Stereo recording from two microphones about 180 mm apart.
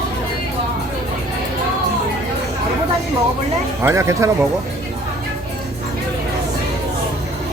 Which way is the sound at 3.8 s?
15° right (ahead or behind).